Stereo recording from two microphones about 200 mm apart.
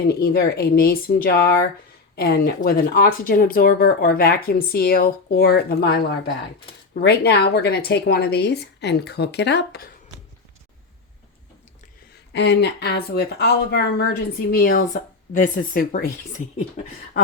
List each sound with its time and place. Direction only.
0.1 s a woman's voice: 50° left (ahead or behind)
12.3 s speech: 60° left (ahead or behind); by 16.0 s 45° left (ahead or behind)